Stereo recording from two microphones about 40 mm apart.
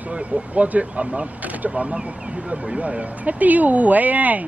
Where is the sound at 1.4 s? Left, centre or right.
Right.